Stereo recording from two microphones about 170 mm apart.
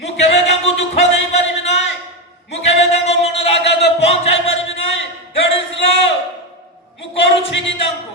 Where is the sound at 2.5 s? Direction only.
40° left (ahead or behind).